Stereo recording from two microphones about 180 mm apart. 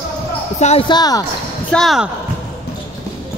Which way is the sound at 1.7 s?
Centre (ahead or behind).